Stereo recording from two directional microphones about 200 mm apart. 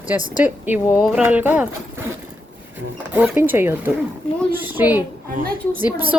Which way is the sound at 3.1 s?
10° right (ahead or behind).